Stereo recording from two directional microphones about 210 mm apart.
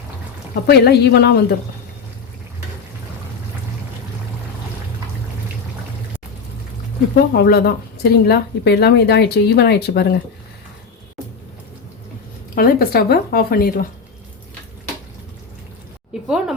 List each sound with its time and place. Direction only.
0.7 s a woman's voice: 50° left (ahead or behind)
7.3 s a woman's voice: 50° left (ahead or behind)
12.5 s a woman's voice: 45° left (ahead or behind)
16.2 s a woman's voice: centre (ahead or behind)